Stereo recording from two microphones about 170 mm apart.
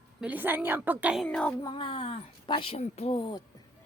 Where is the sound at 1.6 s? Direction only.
30° left (ahead or behind).